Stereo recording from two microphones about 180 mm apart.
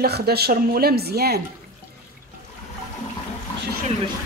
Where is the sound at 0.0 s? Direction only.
60° right (ahead or behind).